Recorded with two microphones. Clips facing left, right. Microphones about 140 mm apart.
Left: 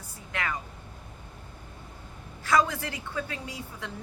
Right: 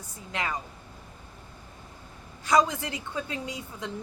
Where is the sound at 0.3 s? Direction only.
20° right (ahead or behind).